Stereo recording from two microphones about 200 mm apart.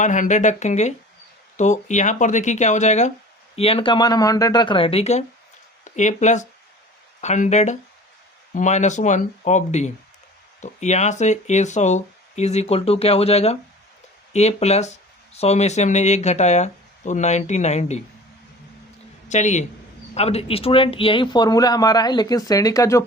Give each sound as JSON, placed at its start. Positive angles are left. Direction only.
{"t": 0.0, "sound": "speech", "side_deg": 40}
{"t": 19.3, "sound": "speech", "side_deg": 35}